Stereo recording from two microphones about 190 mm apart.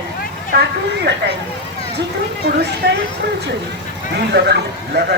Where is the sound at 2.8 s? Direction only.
60° right (ahead or behind).